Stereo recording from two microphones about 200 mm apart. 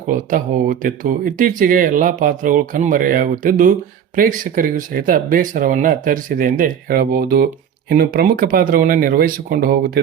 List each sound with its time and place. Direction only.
0.1 s speech: 40° right (ahead or behind)